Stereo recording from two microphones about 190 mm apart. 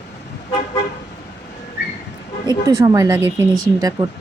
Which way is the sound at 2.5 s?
15° right (ahead or behind).